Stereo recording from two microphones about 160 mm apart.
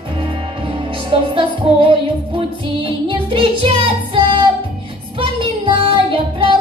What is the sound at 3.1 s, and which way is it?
Music, 30° right (ahead or behind).